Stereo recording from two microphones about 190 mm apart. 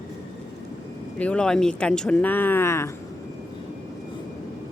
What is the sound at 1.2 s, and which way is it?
Speech, 5° left (ahead or behind).